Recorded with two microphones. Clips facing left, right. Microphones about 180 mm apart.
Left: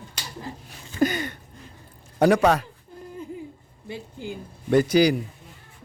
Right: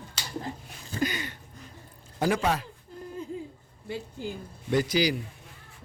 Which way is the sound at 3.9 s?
55° left (ahead or behind).